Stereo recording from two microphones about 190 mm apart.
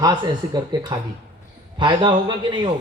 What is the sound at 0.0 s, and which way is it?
A man's voice, 20° right (ahead or behind).